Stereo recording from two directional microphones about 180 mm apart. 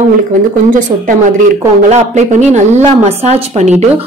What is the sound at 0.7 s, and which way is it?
A woman's voice, 50° right (ahead or behind).